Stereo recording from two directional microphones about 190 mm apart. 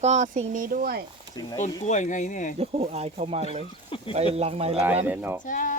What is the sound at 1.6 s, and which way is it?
Speech, 40° left (ahead or behind).